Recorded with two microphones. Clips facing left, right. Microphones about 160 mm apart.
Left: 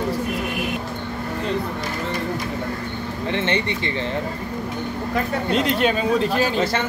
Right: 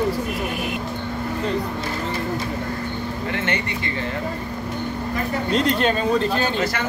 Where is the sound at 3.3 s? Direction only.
25° left (ahead or behind).